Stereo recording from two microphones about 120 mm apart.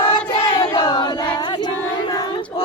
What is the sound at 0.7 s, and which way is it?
Singing, 35° left (ahead or behind).